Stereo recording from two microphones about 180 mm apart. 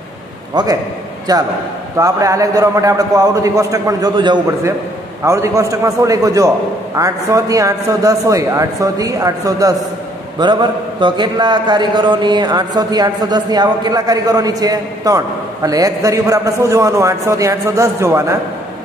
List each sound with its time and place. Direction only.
0.6 s a man's voice: 25° right (ahead or behind)